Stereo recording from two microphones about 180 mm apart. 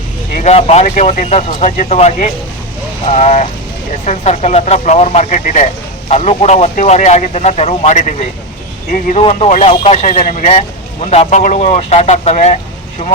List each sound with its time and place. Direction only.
0.3 s speech: 35° left (ahead or behind)